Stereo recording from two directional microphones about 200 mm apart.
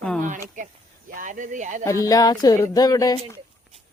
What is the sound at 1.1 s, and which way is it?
Speech, 40° right (ahead or behind).